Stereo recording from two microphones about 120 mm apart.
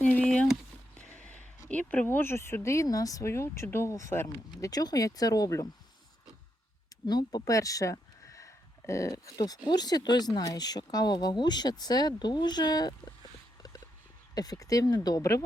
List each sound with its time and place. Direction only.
0.0 s a sound: 10° left (ahead or behind)
1.6 s speech: 10° left (ahead or behind); by 5.6 s 30° left (ahead or behind)
7.1 s speech: 35° left (ahead or behind)
14.3 s speech: 30° left (ahead or behind)